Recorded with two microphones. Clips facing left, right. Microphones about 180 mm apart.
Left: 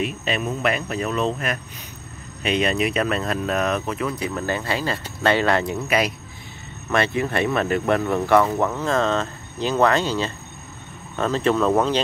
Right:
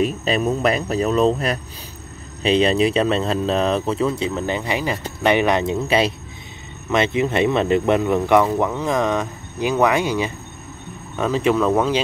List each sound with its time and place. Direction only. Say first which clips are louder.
0.0 s speech: right 5 dB; 35° right (ahead or behind); by 11.7 s 10° right (ahead or behind)